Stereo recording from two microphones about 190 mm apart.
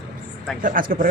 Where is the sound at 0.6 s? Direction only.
45° right (ahead or behind).